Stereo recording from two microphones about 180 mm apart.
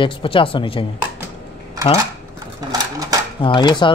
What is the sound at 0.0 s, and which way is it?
Speech, 30° left (ahead or behind).